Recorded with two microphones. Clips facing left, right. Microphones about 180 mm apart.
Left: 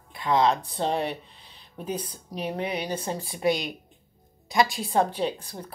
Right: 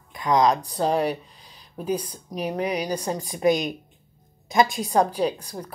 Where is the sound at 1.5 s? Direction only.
35° right (ahead or behind).